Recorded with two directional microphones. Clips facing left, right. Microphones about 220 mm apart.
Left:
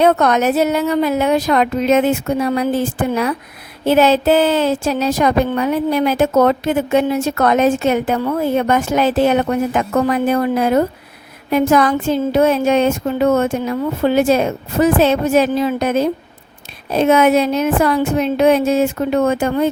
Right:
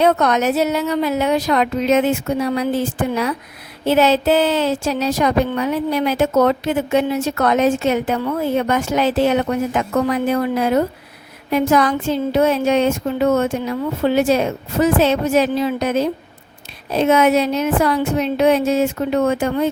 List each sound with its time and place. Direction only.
0.0 s a woman's voice: 50° left (ahead or behind)